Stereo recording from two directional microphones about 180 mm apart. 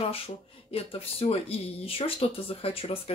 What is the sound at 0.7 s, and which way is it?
Speech, 35° left (ahead or behind).